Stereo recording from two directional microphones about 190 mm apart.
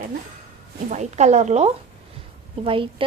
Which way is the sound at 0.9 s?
35° right (ahead or behind).